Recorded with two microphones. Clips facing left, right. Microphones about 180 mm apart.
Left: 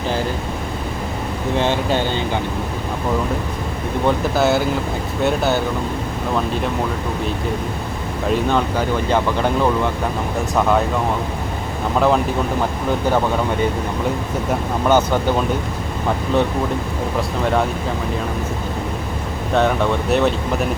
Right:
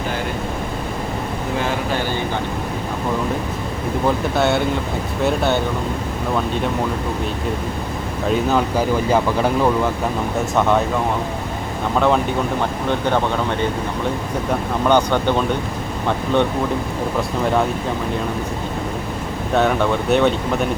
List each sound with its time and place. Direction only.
1.5 s speech: 25° left (ahead or behind)
4.0 s speech: centre (ahead or behind)
8.3 s speech: 5° right (ahead or behind)
11.9 s speech: centre (ahead or behind)
14.8 s speech: 5° left (ahead or behind)
19.5 s speech: centre (ahead or behind)